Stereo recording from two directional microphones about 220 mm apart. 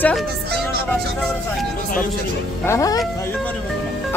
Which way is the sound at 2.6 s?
15° left (ahead or behind).